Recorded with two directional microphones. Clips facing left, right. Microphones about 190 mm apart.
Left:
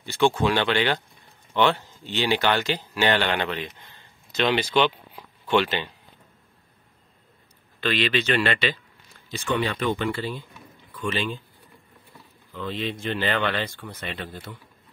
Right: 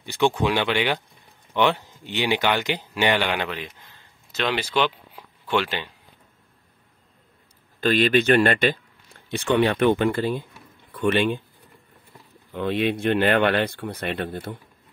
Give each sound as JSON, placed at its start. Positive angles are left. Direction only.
{"t": 0.0, "sound": "speech", "side_deg": -15}
{"t": 7.8, "sound": "speech", "side_deg": -45}
{"t": 9.3, "sound": "speech", "side_deg": -65}
{"t": 10.9, "sound": "speech", "side_deg": -60}
{"t": 12.5, "sound": "speech", "side_deg": -60}